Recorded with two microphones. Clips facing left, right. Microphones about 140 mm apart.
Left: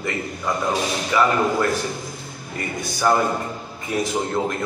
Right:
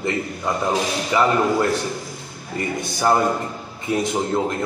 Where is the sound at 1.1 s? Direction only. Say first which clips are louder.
Even; 20° right (ahead or behind).